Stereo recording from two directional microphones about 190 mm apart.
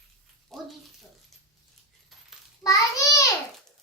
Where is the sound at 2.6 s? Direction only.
15° left (ahead or behind).